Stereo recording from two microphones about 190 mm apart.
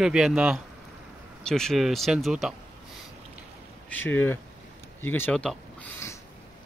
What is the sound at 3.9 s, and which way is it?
Speech, 10° left (ahead or behind).